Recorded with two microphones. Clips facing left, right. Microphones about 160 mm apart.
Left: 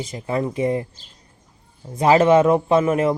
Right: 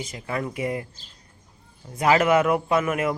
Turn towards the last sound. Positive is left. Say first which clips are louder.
# left 6 dB
turn(degrees=30)  # may be behind; listen again after turning